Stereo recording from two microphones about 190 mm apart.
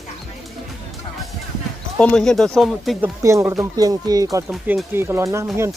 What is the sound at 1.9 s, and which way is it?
Speech, 5° left (ahead or behind).